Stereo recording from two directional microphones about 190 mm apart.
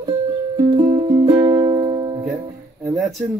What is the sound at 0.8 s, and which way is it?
Music, 30° right (ahead or behind).